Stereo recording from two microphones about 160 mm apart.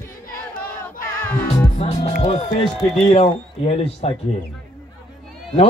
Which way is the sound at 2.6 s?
35° left (ahead or behind).